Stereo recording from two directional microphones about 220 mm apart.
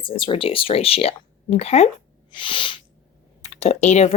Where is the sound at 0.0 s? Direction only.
25° left (ahead or behind).